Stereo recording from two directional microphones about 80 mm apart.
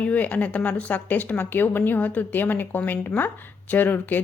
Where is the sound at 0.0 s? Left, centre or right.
Centre.